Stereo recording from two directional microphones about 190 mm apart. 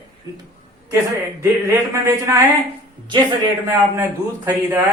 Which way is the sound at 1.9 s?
15° right (ahead or behind).